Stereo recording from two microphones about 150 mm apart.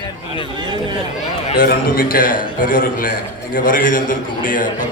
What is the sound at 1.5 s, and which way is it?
A man's voice, 75° left (ahead or behind).